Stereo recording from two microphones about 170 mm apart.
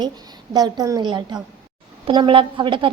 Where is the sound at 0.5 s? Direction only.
25° right (ahead or behind).